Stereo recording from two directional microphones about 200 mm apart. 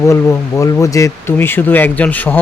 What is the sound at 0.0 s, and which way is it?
Speech, 15° left (ahead or behind).